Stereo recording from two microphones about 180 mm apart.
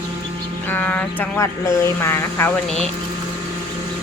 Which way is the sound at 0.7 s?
10° left (ahead or behind).